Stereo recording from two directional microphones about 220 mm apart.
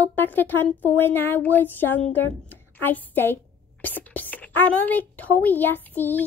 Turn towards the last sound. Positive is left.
turn(degrees=10)  # may be behind; listen again after turning